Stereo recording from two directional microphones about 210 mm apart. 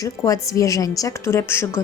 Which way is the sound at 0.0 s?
15° left (ahead or behind).